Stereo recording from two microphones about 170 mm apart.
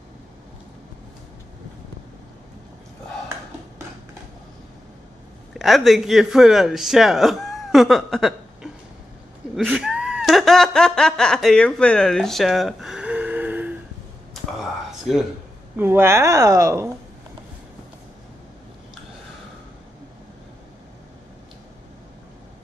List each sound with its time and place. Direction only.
5.5 s speech: centre (ahead or behind)
9.6 s speech: 5° right (ahead or behind)
14.9 s a sound: centre (ahead or behind)
15.7 s a woman's voice: 10° right (ahead or behind)